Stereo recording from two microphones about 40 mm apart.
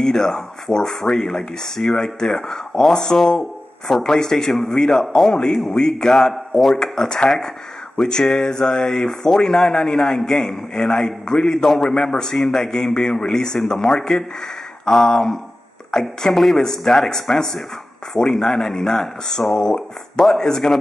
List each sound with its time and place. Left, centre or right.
0.0 s speech: centre
6.8 s speech: centre